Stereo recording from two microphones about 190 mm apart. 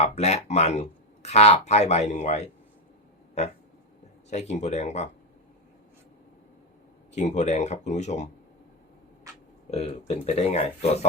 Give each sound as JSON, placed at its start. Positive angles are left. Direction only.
{"t": 0.0, "sound": "speech", "side_deg": 35}
{"t": 4.3, "sound": "speech", "side_deg": 35}
{"t": 7.1, "sound": "speech", "side_deg": 35}
{"t": 10.1, "sound": "speech", "side_deg": 35}